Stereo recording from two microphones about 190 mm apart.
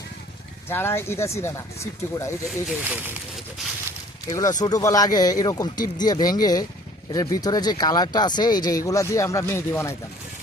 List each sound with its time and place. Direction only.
0.7 s speech: 10° left (ahead or behind)
2.5 s speech: centre (ahead or behind)
4.3 s speech: 20° left (ahead or behind)